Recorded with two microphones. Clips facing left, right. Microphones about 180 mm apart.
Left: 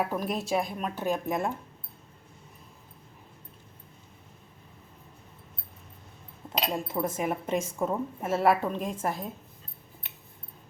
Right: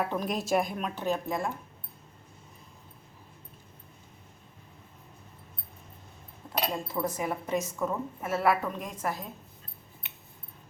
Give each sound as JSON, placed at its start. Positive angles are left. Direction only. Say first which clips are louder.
{"t": 0.0, "sound": "speech", "louder": "left 1 dB", "side_deg": 5}
{"t": 6.5, "sound": "a woman's voice", "louder": "left 1 dB", "side_deg": 20}